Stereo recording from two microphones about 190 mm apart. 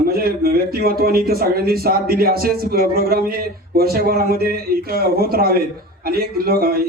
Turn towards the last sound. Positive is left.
turn(degrees=-55)  # may be behind; listen again after turning